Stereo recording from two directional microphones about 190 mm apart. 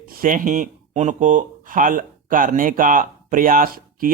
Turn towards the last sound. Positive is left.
turn(degrees=-45)  # may be behind; listen again after turning